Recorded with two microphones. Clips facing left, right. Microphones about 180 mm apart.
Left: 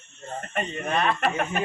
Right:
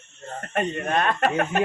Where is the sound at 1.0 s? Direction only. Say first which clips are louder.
Right 2 dB; 45° right (ahead or behind).